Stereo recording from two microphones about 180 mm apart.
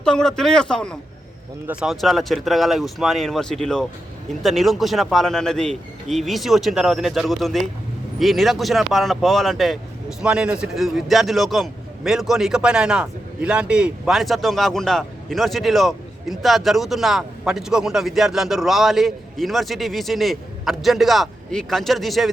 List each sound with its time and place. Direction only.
0.0 s speech: 5° left (ahead or behind)